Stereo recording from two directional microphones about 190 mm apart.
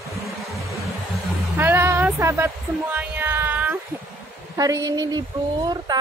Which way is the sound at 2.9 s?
10° right (ahead or behind).